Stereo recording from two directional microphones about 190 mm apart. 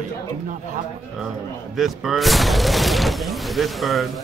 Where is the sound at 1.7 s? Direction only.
Centre (ahead or behind).